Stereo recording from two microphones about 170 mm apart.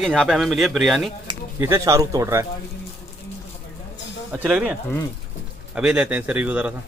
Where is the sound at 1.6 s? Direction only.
15° right (ahead or behind).